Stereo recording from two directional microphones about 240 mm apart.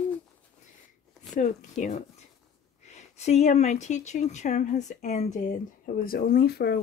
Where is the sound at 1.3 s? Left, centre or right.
Left.